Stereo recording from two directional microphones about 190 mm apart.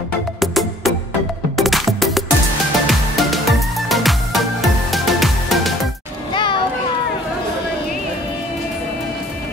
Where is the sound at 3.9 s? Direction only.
Centre (ahead or behind).